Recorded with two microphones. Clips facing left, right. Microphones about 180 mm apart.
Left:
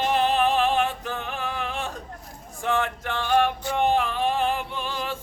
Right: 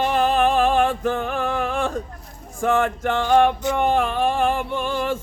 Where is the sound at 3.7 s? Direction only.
50° right (ahead or behind).